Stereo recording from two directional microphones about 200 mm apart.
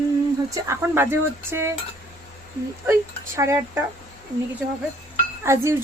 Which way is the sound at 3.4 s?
15° right (ahead or behind).